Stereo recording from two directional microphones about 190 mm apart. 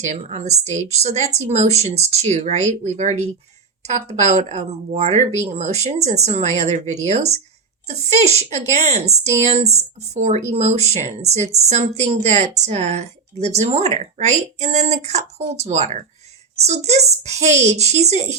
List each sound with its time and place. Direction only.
0.0 s a woman's voice: 35° right (ahead or behind)